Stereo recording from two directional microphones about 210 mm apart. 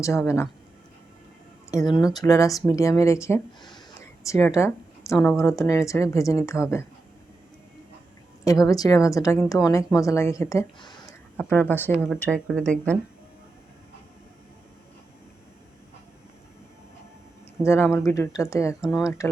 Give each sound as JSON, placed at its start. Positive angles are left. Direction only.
{"t": 0.0, "sound": "speech", "side_deg": 15}
{"t": 1.7, "sound": "speech", "side_deg": 15}
{"t": 5.4, "sound": "speech", "side_deg": 15}
{"t": 8.4, "sound": "speech", "side_deg": 15}
{"t": 11.3, "sound": "speech", "side_deg": 10}
{"t": 17.6, "sound": "speech", "side_deg": 15}
{"t": 18.8, "sound": "speech", "side_deg": 0}